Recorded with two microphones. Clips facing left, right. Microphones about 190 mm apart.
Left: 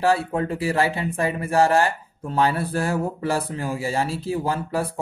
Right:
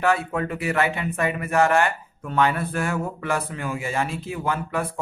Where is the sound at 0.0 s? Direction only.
30° left (ahead or behind).